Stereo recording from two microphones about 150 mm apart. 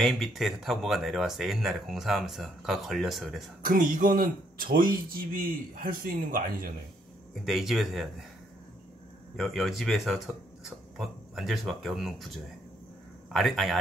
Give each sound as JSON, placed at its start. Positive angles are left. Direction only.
{"t": 0.0, "sound": "speech", "side_deg": 0}
{"t": 3.6, "sound": "speech", "side_deg": -65}
{"t": 7.3, "sound": "speech", "side_deg": 0}
{"t": 9.4, "sound": "speech", "side_deg": 0}
{"t": 13.3, "sound": "speech", "side_deg": 0}